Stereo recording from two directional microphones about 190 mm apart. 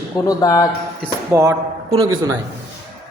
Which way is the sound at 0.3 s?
20° left (ahead or behind).